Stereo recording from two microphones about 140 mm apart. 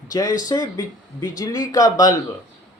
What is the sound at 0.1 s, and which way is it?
Speech, 25° left (ahead or behind).